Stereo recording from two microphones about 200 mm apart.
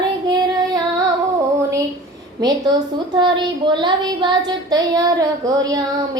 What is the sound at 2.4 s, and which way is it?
A woman's voice, 20° right (ahead or behind).